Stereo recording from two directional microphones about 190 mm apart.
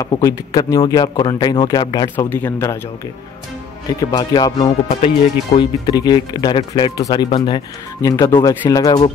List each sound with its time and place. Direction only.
0.0 s speech: 15° left (ahead or behind)
2.1 s speech: 10° left (ahead or behind)
4.0 s speech: 20° left (ahead or behind)
4.8 s speech: 30° left (ahead or behind)